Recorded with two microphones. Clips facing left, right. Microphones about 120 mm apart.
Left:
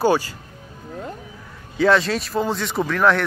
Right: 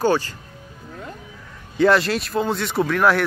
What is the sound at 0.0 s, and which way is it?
Speech, 10° left (ahead or behind).